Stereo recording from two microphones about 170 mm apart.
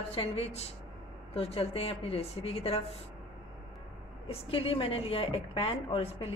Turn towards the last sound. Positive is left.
turn(degrees=35)  # may be behind; listen again after turning